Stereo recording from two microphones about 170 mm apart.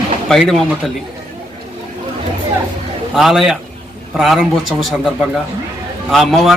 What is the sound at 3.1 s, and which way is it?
Speech, centre (ahead or behind).